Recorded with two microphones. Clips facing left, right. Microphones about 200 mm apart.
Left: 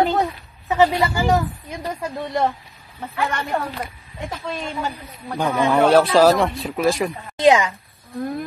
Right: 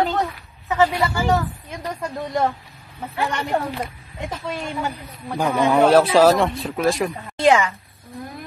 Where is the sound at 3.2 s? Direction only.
15° right (ahead or behind); by 7.1 s centre (ahead or behind).